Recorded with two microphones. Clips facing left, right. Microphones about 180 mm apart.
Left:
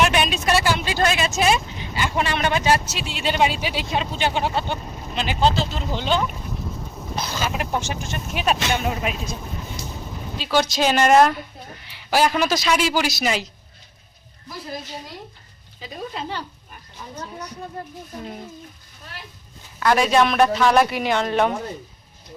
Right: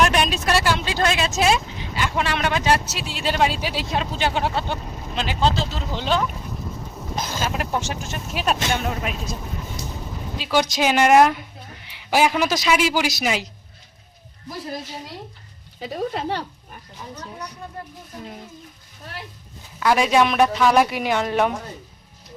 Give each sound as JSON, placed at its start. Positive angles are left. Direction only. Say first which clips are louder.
{"t": 0.0, "sound": "speech", "louder": "even", "side_deg": 0}
{"t": 9.8, "sound": "a sound", "louder": "right 1 dB", "side_deg": 0}
{"t": 10.3, "sound": "a man's voice", "louder": "even", "side_deg": -10}
{"t": 15.8, "sound": "speech", "louder": "right 5 dB", "side_deg": -60}
{"t": 19.8, "sound": "a man's voice", "louder": "even", "side_deg": -10}